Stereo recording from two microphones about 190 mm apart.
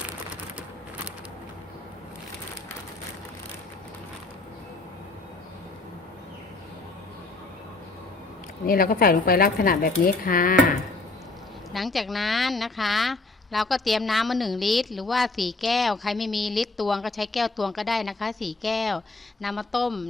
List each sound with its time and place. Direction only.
8.6 s speech: 50° left (ahead or behind)
11.7 s a woman's voice: centre (ahead or behind)